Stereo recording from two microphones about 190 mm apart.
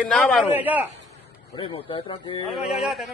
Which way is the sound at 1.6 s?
30° left (ahead or behind).